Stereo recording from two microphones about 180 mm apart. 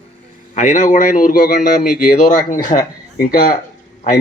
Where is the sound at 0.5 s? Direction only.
45° left (ahead or behind).